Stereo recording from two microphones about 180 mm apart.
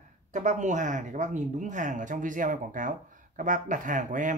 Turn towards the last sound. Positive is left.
turn(degrees=-45)  # may be behind; listen again after turning